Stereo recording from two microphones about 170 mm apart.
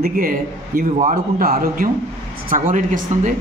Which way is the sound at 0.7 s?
55° right (ahead or behind).